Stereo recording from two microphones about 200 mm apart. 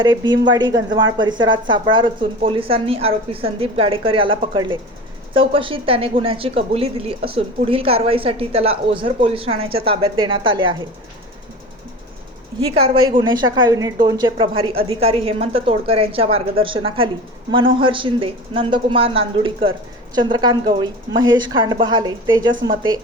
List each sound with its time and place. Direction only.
0.0 s speech: 20° right (ahead or behind)
12.5 s speech: 25° right (ahead or behind)